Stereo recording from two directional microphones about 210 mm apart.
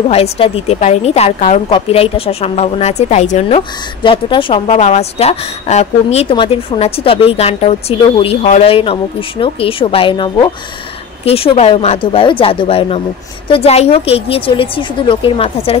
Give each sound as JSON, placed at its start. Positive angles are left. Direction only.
{"t": 0.1, "sound": "a woman's voice", "side_deg": 30}